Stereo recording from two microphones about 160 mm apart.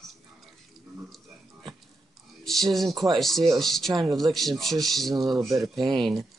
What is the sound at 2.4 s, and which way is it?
Speech, centre (ahead or behind).